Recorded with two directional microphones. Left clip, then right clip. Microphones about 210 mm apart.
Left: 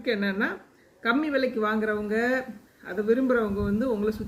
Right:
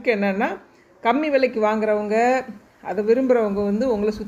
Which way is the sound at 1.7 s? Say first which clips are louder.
Right 7 dB; 20° right (ahead or behind).